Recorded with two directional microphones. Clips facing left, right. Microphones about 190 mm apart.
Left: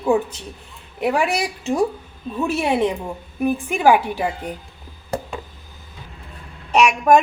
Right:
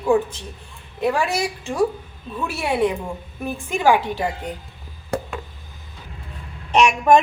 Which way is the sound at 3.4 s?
15° left (ahead or behind).